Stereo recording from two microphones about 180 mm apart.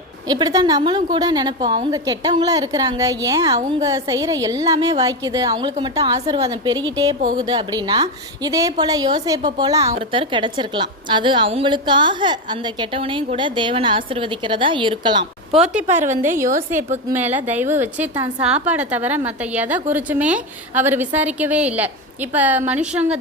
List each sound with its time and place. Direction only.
0.3 s a woman's voice: 20° right (ahead or behind)
9.9 s a woman's voice: 30° right (ahead or behind)
15.5 s a woman's voice: 5° right (ahead or behind)